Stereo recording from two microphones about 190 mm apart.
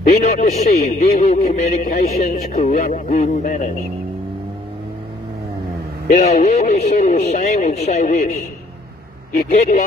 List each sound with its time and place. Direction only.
0.1 s speech: 35° left (ahead or behind)
6.0 s speech: 35° left (ahead or behind)
9.5 s speech: 35° left (ahead or behind)